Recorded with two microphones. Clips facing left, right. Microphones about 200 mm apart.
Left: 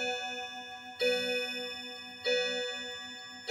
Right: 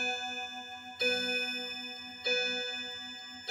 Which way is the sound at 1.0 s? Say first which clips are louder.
Left 5 dB; 25° left (ahead or behind).